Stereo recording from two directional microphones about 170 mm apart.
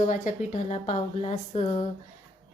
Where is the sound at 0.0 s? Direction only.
45° left (ahead or behind).